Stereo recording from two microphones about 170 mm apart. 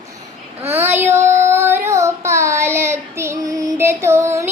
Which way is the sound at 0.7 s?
10° right (ahead or behind).